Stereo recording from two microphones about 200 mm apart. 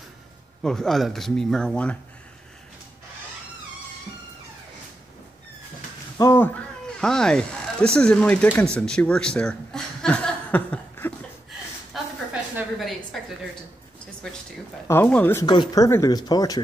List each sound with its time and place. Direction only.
0.6 s speech: centre (ahead or behind)
6.1 s a sound: 15° left (ahead or behind)
7.0 s speech: 5° left (ahead or behind)
8.7 s chuckle: 5° left (ahead or behind)
12.5 s speech: centre (ahead or behind)
14.9 s speech: 10° left (ahead or behind)
15.4 s speech: 20° left (ahead or behind)